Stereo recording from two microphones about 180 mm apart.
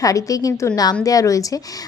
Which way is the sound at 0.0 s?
20° left (ahead or behind).